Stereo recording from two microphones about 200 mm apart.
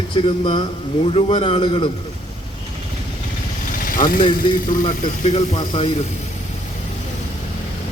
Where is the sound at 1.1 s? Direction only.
30° left (ahead or behind).